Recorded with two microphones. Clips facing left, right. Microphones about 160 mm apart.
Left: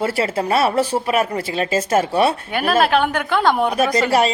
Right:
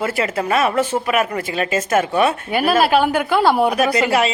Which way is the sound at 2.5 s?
5° right (ahead or behind).